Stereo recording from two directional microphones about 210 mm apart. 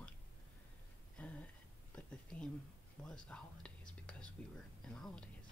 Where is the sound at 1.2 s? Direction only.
5° left (ahead or behind).